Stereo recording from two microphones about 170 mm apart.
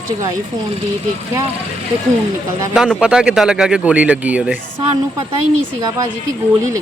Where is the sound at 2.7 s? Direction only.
5° right (ahead or behind).